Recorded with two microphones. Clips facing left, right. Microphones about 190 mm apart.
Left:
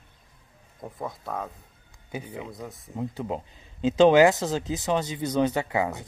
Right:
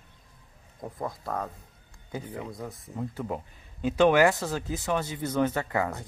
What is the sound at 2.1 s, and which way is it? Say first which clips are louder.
Speech: even; 15° left (ahead or behind).